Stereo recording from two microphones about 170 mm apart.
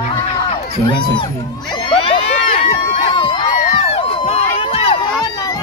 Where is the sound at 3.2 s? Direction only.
30° left (ahead or behind).